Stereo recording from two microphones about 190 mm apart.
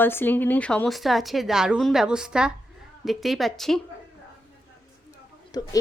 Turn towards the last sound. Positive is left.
turn(degrees=20)  # may be behind; listen again after turning